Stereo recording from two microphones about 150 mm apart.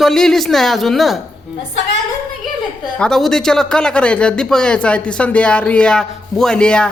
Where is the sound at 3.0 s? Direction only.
Centre (ahead or behind).